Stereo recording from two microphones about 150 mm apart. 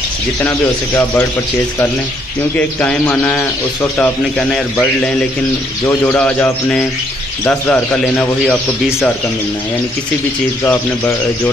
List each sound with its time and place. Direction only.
0.4 s speech: 15° left (ahead or behind)
2.5 s speech: 10° left (ahead or behind)
10.6 s speech: 15° left (ahead or behind)